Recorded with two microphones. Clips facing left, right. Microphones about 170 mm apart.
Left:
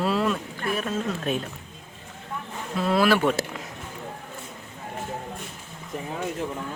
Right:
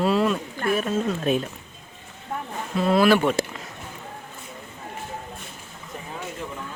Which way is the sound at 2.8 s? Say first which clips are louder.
Right 2 dB; centre (ahead or behind).